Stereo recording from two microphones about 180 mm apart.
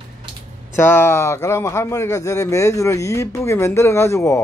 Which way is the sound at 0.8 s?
10° left (ahead or behind).